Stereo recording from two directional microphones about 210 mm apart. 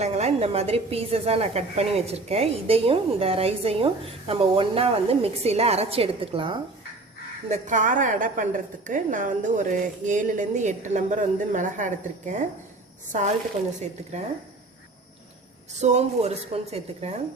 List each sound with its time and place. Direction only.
0.0 s a woman's voice: 30° right (ahead or behind)
7.5 s a woman's voice: 35° right (ahead or behind)
15.8 s a woman's voice: 30° right (ahead or behind)